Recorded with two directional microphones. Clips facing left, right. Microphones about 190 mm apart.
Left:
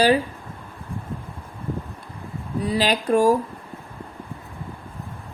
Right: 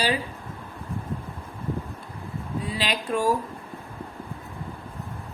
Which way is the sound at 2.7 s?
40° left (ahead or behind).